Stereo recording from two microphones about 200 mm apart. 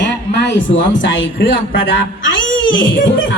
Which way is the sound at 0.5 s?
65° left (ahead or behind).